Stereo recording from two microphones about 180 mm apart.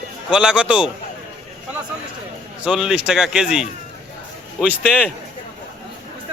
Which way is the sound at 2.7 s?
5° right (ahead or behind).